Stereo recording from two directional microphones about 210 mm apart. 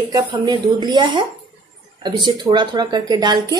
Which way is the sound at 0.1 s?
20° right (ahead or behind).